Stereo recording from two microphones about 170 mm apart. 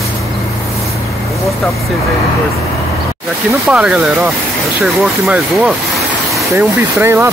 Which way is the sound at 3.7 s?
5° right (ahead or behind).